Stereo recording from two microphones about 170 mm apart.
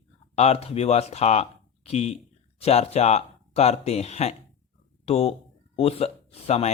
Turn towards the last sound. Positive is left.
turn(degrees=40)  # may be behind; listen again after turning